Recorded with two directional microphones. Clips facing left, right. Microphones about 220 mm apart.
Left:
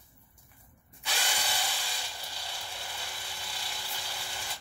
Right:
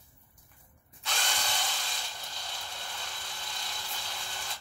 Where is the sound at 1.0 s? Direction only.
10° left (ahead or behind).